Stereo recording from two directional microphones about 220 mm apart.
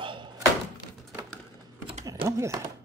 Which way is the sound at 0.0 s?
20° right (ahead or behind).